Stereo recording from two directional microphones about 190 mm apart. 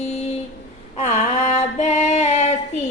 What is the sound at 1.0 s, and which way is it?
Female singing, 40° left (ahead or behind).